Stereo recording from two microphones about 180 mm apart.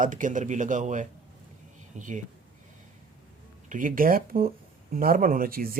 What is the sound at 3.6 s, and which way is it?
Speech, 50° right (ahead or behind).